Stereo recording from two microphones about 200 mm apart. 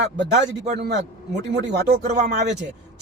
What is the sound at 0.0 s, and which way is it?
Speech, 60° right (ahead or behind).